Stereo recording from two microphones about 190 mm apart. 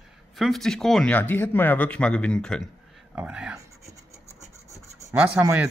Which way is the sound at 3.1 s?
5° right (ahead or behind).